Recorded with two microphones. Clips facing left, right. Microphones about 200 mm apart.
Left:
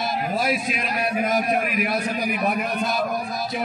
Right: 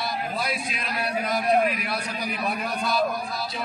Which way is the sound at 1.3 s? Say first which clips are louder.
Even; 15° left (ahead or behind).